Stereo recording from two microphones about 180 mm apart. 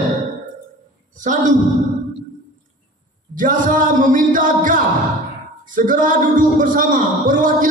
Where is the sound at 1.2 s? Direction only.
45° right (ahead or behind).